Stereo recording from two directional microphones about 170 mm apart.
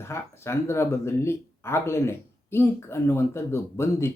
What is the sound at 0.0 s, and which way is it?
Speech, 15° left (ahead or behind).